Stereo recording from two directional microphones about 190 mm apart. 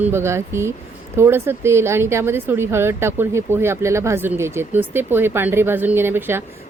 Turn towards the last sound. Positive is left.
turn(degrees=-10)  # may be behind; listen again after turning